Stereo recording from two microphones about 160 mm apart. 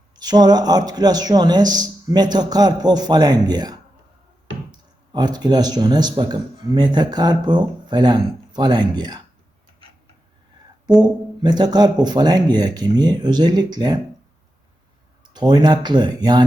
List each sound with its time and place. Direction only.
0.2 s speech: 25° right (ahead or behind)
11.4 s speech: 25° right (ahead or behind)
15.3 s speech: 25° right (ahead or behind)